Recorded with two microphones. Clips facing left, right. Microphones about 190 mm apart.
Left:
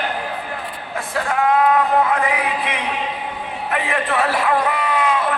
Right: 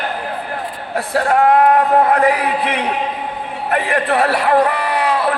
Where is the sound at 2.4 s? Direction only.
65° right (ahead or behind).